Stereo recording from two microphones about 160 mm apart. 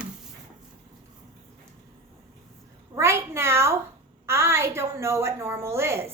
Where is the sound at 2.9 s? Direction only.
15° right (ahead or behind).